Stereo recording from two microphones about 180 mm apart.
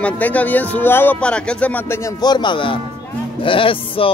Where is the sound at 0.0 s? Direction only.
10° left (ahead or behind).